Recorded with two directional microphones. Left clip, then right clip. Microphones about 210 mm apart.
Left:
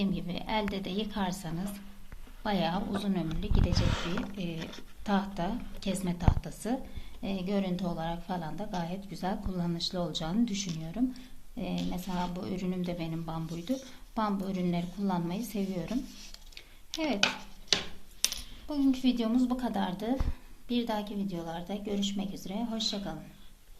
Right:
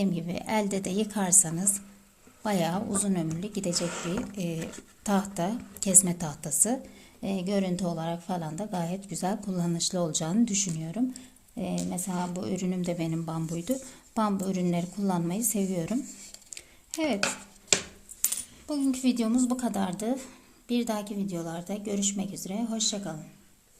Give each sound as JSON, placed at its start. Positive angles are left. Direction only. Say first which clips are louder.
{"t": 0.0, "sound": "a woman's voice", "louder": "right 4 dB", "side_deg": -55}
{"t": 11.8, "sound": "a woman's voice", "louder": "even", "side_deg": -40}
{"t": 16.6, "sound": "a sound", "louder": "right 3 dB", "side_deg": -55}
{"t": 18.7, "sound": "a woman's voice", "louder": "right 1 dB", "side_deg": -55}